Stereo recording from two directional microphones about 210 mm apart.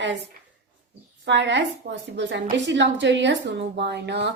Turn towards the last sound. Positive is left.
turn(degrees=-55)  # may be behind; listen again after turning